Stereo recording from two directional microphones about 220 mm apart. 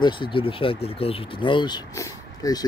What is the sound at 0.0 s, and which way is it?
Speech, 25° left (ahead or behind).